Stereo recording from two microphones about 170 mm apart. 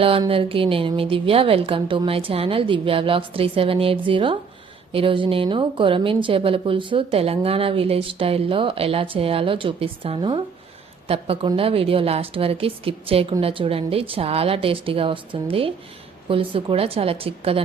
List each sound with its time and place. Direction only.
0.0 s a woman's voice: 35° right (ahead or behind)